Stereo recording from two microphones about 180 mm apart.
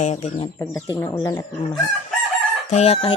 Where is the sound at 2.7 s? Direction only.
35° left (ahead or behind).